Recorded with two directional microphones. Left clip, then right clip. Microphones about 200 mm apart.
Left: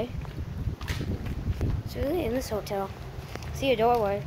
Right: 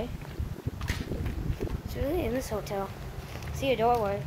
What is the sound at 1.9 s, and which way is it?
Speech, 20° left (ahead or behind).